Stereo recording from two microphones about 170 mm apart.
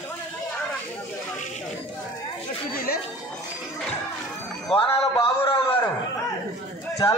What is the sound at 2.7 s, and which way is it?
Chatter, 60° left (ahead or behind).